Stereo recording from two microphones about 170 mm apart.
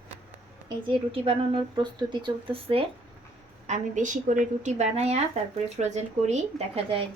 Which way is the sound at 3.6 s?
45° right (ahead or behind).